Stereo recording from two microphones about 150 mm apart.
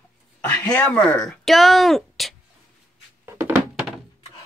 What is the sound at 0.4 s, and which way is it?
Speech, 10° left (ahead or behind).